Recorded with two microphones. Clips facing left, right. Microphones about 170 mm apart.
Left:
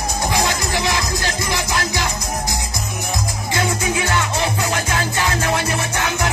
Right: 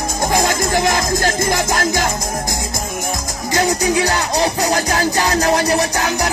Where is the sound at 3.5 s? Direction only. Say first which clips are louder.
Right 5 dB; 40° right (ahead or behind).